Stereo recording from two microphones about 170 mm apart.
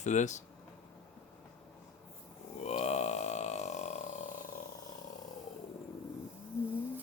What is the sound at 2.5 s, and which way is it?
Burping, 40° left (ahead or behind).